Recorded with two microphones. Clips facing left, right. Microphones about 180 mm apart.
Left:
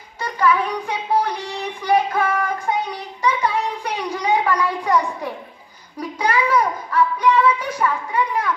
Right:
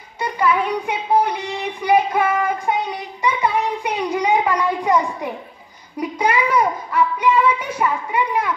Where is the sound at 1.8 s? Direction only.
15° right (ahead or behind).